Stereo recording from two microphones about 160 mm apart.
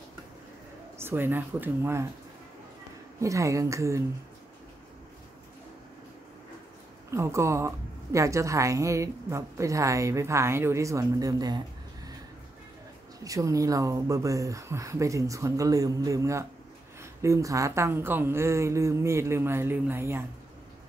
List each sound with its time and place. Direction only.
0.9 s a woman's voice: 15° right (ahead or behind)
3.2 s a woman's voice: 20° right (ahead or behind)
7.1 s a woman's voice: 15° right (ahead or behind)
13.2 s a woman's voice: 20° right (ahead or behind)